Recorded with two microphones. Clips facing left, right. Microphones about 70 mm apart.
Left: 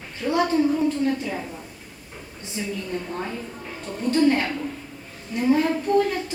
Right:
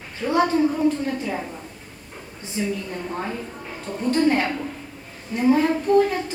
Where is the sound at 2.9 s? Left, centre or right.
Centre.